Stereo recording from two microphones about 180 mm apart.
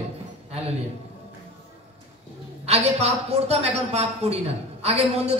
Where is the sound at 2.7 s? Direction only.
35° right (ahead or behind).